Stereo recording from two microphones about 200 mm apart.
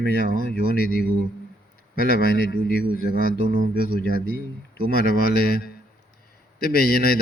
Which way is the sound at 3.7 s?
50° left (ahead or behind).